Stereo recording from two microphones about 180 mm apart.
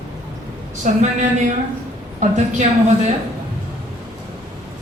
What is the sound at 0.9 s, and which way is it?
Speech, 40° right (ahead or behind).